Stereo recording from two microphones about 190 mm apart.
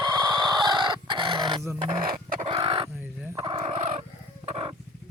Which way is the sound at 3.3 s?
30° right (ahead or behind).